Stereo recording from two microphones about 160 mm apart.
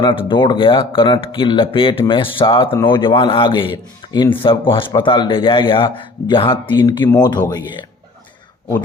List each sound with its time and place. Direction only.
0.0 s a man's voice: 30° left (ahead or behind)